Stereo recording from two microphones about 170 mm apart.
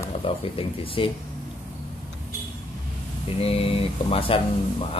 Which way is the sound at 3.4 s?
35° left (ahead or behind).